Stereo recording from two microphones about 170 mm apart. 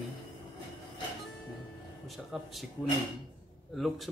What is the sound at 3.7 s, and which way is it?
Speech, centre (ahead or behind).